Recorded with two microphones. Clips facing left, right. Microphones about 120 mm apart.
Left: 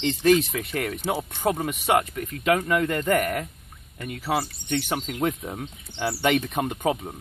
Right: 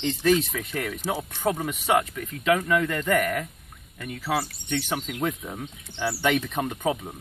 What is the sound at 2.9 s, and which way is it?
Speech, 20° left (ahead or behind).